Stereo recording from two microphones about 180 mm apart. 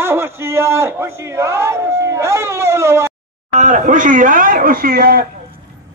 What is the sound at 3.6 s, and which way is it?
Speech, 45° right (ahead or behind).